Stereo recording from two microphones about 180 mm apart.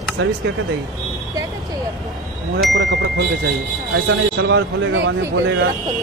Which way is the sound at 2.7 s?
75° right (ahead or behind).